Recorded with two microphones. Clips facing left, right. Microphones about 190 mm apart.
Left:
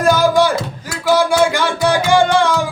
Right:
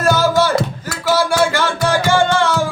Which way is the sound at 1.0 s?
15° left (ahead or behind).